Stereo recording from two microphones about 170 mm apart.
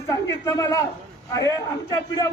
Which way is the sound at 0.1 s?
20° left (ahead or behind).